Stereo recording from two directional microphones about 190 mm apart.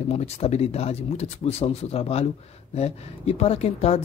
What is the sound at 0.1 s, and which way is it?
Speech, 35° left (ahead or behind).